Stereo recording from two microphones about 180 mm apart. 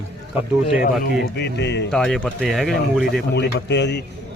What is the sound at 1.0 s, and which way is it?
Speech, 65° left (ahead or behind).